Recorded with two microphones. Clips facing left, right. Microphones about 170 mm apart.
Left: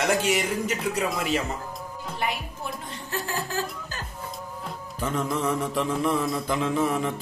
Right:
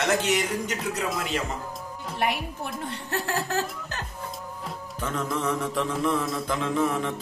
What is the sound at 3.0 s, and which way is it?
Chuckle, 70° right (ahead or behind).